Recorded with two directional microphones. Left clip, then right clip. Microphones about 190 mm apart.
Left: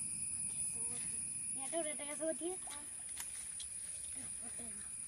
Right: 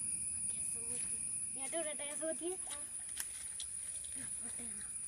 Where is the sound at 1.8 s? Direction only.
20° right (ahead or behind).